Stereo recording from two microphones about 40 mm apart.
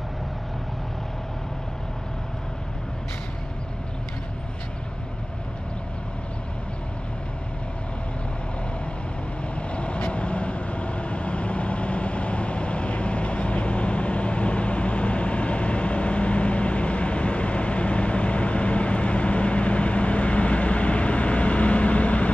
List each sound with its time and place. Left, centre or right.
9.6 s vehicle: left